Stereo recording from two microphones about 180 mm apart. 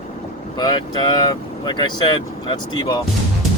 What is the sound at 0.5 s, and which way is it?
Speech, 25° left (ahead or behind).